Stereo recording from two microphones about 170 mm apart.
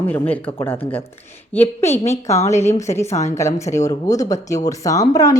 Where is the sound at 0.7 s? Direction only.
35° left (ahead or behind).